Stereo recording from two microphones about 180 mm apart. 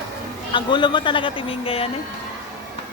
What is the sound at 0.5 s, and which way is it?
A man's voice, 25° left (ahead or behind).